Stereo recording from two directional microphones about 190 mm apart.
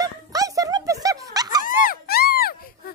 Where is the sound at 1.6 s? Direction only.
45° left (ahead or behind).